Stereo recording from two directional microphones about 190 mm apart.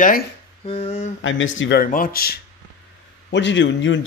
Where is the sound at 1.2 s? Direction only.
85° left.